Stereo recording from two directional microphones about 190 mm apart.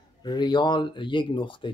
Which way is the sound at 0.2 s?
20° left (ahead or behind).